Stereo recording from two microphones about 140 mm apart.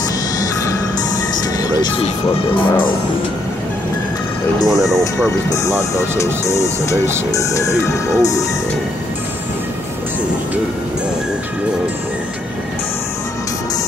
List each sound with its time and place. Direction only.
1.6 s music: 30° left (ahead or behind)
2.5 s speech: 40° left (ahead or behind)
4.6 s speech: centre (ahead or behind)
5.5 s speech: 20° left (ahead or behind)